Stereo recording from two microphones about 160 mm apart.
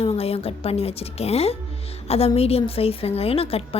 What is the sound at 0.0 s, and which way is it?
A woman's voice, 35° left (ahead or behind).